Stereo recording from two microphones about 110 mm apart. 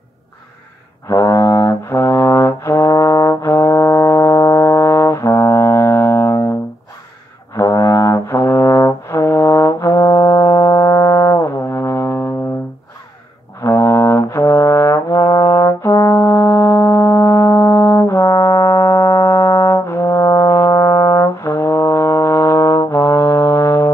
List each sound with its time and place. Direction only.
1.0 s brass instrument: 20° left (ahead or behind)
7.5 s brass instrument: 25° left (ahead or behind)
13.6 s brass instrument: 25° left (ahead or behind)